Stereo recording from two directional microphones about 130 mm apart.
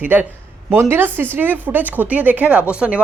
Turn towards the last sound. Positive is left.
turn(degrees=-10)  # may be behind; listen again after turning